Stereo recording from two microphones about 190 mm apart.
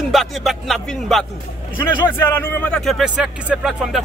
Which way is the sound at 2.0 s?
10° left (ahead or behind).